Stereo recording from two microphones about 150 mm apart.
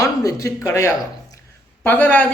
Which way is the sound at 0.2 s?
20° left (ahead or behind).